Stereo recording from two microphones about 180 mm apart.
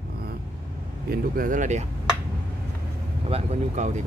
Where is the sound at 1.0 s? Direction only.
50° right (ahead or behind).